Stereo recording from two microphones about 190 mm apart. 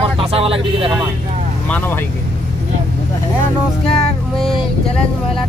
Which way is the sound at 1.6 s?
10° left (ahead or behind).